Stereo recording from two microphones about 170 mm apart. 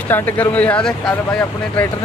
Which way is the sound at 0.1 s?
10° left (ahead or behind).